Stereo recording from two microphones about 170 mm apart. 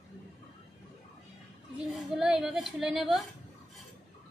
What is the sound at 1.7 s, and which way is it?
A woman's voice, 5° right (ahead or behind).